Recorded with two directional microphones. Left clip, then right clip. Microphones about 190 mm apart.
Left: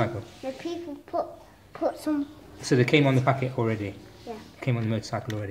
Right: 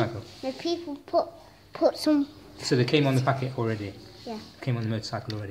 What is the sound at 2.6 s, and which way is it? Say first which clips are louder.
Speech: left 2 dB; 10° left (ahead or behind).